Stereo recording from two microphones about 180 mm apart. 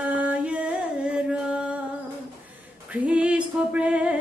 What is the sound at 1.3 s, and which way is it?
Music, 5° right (ahead or behind).